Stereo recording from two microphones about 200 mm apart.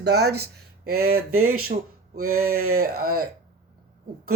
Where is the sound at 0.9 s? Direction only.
90° right.